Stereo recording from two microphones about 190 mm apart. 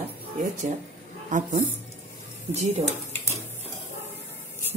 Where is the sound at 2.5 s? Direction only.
35° right (ahead or behind).